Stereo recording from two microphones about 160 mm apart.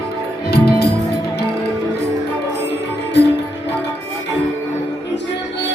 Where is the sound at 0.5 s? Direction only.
85° left.